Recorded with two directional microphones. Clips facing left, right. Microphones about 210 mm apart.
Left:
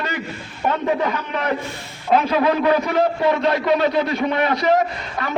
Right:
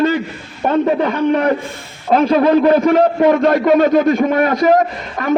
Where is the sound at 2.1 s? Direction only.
40° right (ahead or behind).